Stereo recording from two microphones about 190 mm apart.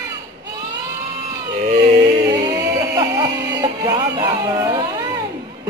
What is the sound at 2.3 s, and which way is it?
Music, 20° right (ahead or behind).